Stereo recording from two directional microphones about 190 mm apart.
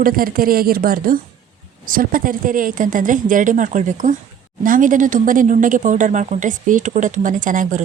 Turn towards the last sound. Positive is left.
turn(degrees=-45)  # may be behind; listen again after turning